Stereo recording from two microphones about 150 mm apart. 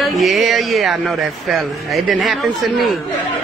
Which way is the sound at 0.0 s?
Centre (ahead or behind).